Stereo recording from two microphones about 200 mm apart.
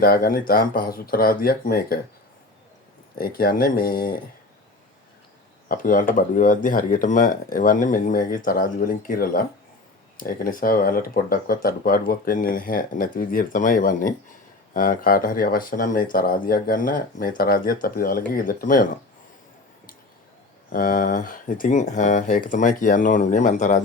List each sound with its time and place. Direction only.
0.0 s speech: 50° left (ahead or behind)
3.2 s speech: 50° left (ahead or behind)
5.6 s speech: 45° left (ahead or behind)
20.7 s speech: 45° left (ahead or behind)